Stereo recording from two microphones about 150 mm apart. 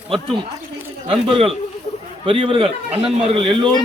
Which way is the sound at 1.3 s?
40° right (ahead or behind).